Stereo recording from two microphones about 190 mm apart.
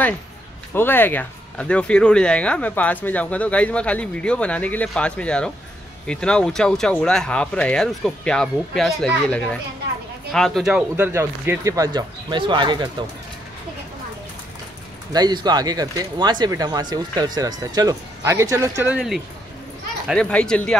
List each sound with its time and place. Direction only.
0.7 s speech: 10° left (ahead or behind); by 12.9 s 25° right (ahead or behind)
15.1 s speech: 20° right (ahead or behind)
18.9 s speech: centre (ahead or behind)